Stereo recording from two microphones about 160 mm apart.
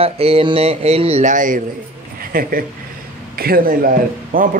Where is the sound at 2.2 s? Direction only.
65° right (ahead or behind).